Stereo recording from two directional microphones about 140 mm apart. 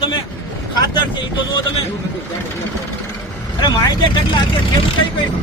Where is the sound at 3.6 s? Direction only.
30° left (ahead or behind).